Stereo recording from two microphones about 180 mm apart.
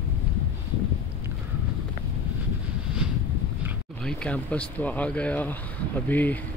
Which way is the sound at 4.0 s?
5° left (ahead or behind).